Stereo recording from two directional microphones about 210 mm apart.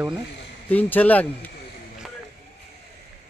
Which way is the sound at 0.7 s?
5° left (ahead or behind).